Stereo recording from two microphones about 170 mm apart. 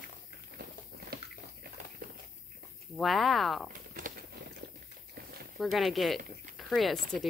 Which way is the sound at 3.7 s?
55° right (ahead or behind).